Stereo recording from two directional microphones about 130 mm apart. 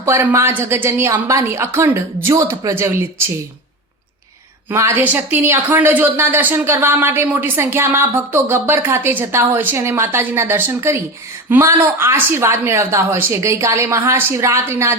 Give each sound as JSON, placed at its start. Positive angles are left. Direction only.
{"t": 0.0, "sound": "a woman's voice", "side_deg": -20}
{"t": 4.7, "sound": "a woman's voice", "side_deg": -20}